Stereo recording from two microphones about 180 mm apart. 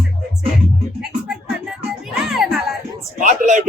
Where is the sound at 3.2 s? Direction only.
45° right (ahead or behind).